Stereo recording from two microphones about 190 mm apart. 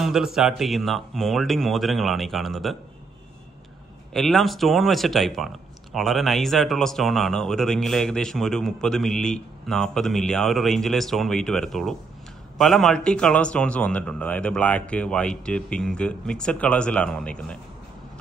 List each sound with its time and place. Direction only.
0.0 s speech: centre (ahead or behind)
4.1 s speech: centre (ahead or behind)